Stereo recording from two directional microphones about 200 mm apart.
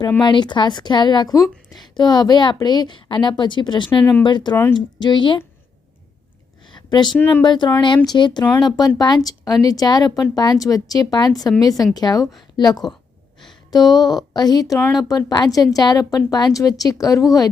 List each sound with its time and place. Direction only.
0.2 s a woman's voice: 20° left (ahead or behind)
6.7 s a sound: 20° left (ahead or behind)
7.2 s speech: 10° left (ahead or behind)
7.4 s a woman's voice: 20° left (ahead or behind)
13.9 s a woman's voice: 20° left (ahead or behind)